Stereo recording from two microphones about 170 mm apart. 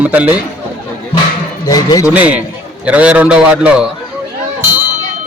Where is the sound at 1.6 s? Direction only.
20° left (ahead or behind).